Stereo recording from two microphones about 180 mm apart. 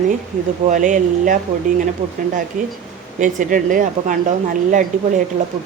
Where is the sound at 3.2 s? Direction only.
45° right (ahead or behind).